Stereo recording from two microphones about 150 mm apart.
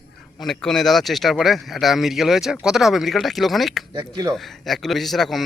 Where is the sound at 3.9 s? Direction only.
25° right (ahead or behind).